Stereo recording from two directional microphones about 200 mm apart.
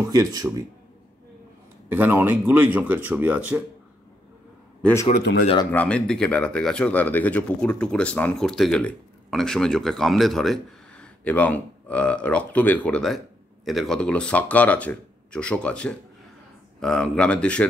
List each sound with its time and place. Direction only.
0.1 s speech: 20° right (ahead or behind)
1.9 s speech: 10° right (ahead or behind)
5.2 s a man's voice: 55° left (ahead or behind)
5.7 s speech: 5° left (ahead or behind)